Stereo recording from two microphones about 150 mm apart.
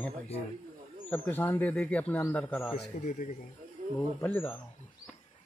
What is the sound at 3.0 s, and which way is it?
Speech, 55° left (ahead or behind).